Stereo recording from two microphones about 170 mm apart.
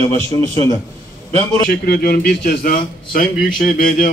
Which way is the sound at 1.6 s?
65° left (ahead or behind).